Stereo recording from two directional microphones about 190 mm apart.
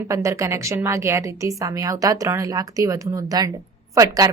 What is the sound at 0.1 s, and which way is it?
A woman's voice, 15° right (ahead or behind).